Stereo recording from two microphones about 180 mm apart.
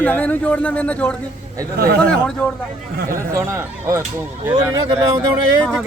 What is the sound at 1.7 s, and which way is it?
Speech, 60° right (ahead or behind).